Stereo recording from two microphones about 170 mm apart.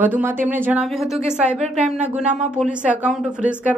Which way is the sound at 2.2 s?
45° right (ahead or behind).